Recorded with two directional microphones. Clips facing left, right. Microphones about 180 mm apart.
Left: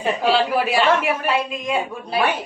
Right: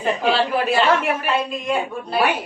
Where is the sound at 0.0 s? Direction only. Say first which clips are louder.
Left 1 dB; 10° left (ahead or behind).